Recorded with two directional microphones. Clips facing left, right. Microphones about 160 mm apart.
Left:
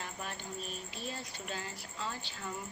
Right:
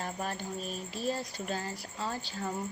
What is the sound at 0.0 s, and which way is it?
Speech, 40° right (ahead or behind).